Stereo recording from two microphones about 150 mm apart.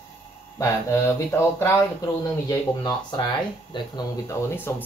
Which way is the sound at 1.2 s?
15° left (ahead or behind).